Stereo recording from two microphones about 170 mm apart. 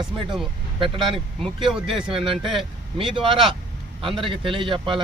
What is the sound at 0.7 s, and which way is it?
Speech, 30° right (ahead or behind).